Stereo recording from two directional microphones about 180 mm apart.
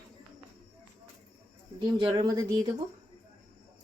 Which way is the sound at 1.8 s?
25° right (ahead or behind).